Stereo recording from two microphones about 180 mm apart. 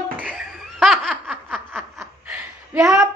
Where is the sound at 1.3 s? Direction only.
5° right (ahead or behind).